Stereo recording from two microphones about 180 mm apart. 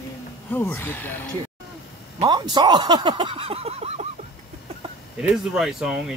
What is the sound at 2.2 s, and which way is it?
Speech, 25° right (ahead or behind).